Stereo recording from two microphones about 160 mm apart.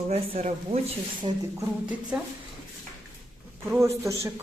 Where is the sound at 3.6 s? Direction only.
15° right (ahead or behind).